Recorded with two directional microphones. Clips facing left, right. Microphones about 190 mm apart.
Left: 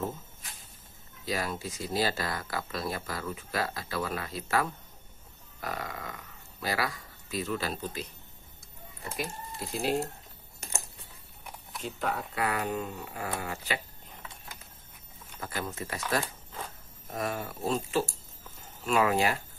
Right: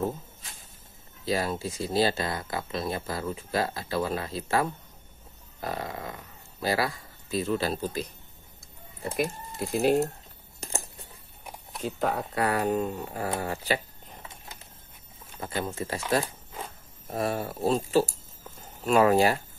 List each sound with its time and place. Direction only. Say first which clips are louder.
1.2 s speech: right 5 dB; 30° right (ahead or behind)
9.1 s speech: right 7 dB; 55° right (ahead or behind)
11.8 s speech: right 5 dB; 40° right (ahead or behind)
15.4 s speech: right 4 dB; 25° right (ahead or behind)